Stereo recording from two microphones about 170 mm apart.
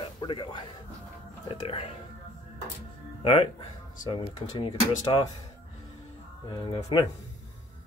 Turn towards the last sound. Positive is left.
turn(degrees=25)  # may be behind; listen again after turning